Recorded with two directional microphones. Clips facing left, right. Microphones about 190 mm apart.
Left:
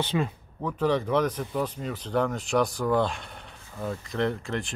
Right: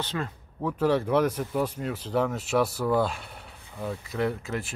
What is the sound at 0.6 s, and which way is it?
Speech, 5° right (ahead or behind).